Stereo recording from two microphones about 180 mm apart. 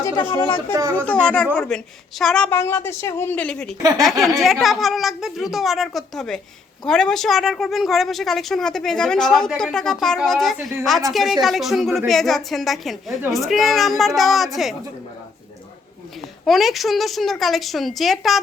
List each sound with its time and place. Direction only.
0.3 s speech: 25° left (ahead or behind)
0.7 s speech: 15° right (ahead or behind)
1.0 s a woman's voice: 5° left (ahead or behind)
16.5 s speech: centre (ahead or behind)